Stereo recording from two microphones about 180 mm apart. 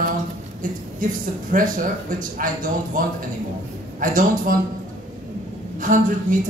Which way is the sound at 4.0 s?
50° right (ahead or behind).